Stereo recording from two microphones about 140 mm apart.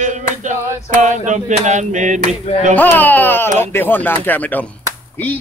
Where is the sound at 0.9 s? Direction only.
60° right (ahead or behind).